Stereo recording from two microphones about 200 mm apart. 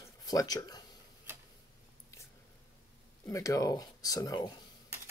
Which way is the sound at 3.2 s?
15° left (ahead or behind).